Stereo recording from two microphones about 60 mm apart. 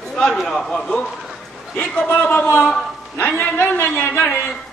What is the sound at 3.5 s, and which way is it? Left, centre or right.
Speech, left.